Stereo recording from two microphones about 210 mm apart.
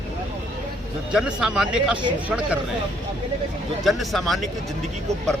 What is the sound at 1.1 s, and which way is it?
Speech, 5° right (ahead or behind).